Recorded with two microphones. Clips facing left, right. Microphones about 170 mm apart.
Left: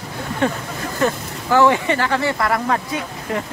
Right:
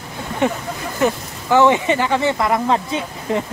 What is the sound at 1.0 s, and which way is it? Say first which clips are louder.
Speech: right 2 dB; 20° right (ahead or behind).